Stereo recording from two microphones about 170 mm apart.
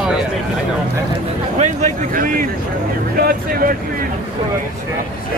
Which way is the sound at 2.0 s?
50° right (ahead or behind).